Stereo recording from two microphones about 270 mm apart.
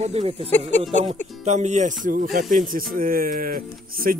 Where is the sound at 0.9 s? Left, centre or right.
Right.